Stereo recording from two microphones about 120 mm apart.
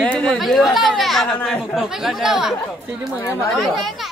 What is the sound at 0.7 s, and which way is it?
Speech, centre (ahead or behind).